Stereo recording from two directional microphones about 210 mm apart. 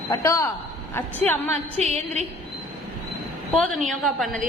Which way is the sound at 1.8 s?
30° right (ahead or behind).